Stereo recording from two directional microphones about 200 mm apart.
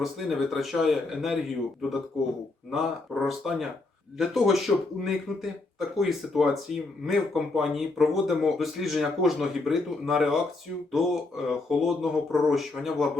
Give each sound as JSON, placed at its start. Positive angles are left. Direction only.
{"t": 0.0, "sound": "speech", "side_deg": 0}